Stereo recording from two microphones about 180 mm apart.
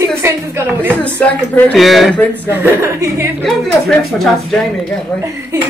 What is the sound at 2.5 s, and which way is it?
Speech, 10° right (ahead or behind).